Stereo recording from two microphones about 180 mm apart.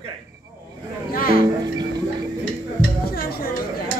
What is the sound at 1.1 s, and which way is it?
Music, 55° left (ahead or behind).